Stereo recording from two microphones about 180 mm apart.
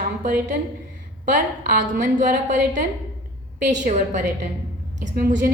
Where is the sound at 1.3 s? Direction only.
50° right (ahead or behind).